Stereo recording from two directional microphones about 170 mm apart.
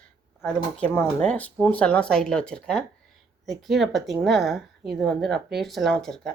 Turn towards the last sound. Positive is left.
turn(degrees=5)  # may be behind; listen again after turning